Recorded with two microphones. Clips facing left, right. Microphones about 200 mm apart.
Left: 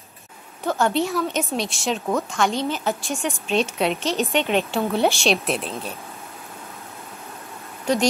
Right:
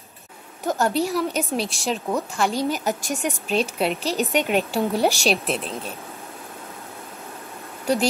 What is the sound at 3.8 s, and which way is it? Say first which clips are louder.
A woman's voice: left 1 dB; 5° right (ahead or behind).